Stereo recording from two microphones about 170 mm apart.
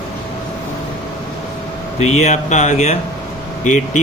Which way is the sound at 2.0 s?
40° left (ahead or behind).